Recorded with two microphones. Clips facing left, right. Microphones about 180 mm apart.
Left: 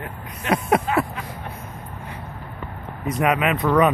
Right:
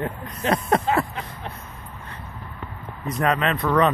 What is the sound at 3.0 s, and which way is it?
Speech, 10° left (ahead or behind).